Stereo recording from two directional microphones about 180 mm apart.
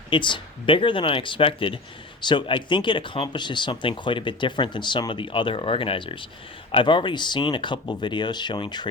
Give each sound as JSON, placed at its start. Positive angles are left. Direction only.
{"t": 0.1, "sound": "speech", "side_deg": 25}